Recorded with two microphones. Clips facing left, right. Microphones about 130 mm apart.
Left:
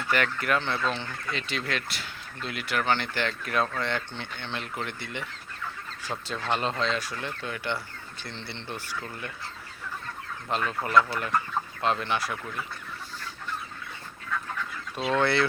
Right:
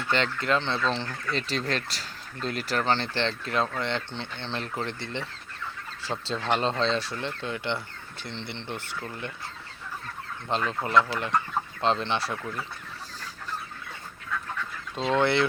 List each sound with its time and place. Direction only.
0.1 s speech: 25° right (ahead or behind)
1.3 s speech: 35° right (ahead or behind)
10.5 s speech: 25° right (ahead or behind)
14.9 s speech: 20° right (ahead or behind)